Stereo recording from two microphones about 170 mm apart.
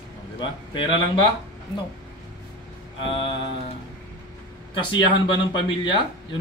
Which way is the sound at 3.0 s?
30° left (ahead or behind).